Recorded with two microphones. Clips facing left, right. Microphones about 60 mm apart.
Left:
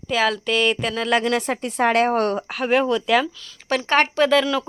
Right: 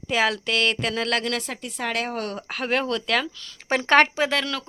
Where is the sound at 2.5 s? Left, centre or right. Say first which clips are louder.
Left 3 dB; centre.